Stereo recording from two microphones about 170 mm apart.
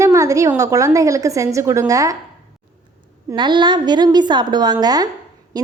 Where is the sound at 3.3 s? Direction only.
25° right (ahead or behind).